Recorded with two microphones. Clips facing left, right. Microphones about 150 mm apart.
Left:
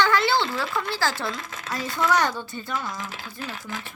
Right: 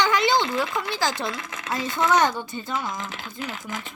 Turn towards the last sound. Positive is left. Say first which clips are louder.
# right 2 dB
turn(degrees=-15)  # may be behind; listen again after turning